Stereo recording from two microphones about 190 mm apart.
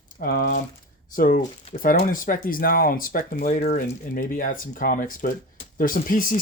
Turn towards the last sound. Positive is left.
turn(degrees=45)  # may be behind; listen again after turning